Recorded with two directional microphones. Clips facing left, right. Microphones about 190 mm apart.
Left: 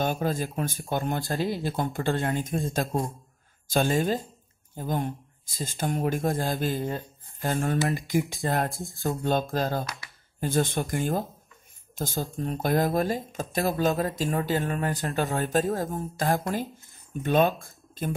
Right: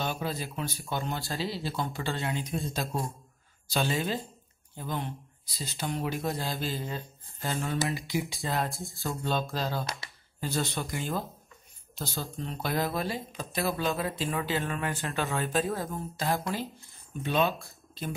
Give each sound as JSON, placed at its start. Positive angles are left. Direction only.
{"t": 0.0, "sound": "speech", "side_deg": 50}
{"t": 11.9, "sound": "a sound", "side_deg": 50}
{"t": 12.4, "sound": "speech", "side_deg": 45}